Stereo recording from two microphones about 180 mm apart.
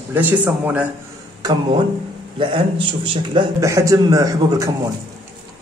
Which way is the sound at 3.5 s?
15° right (ahead or behind).